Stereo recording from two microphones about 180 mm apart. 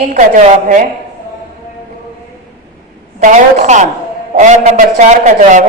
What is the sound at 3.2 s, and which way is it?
A woman's voice, 45° right (ahead or behind).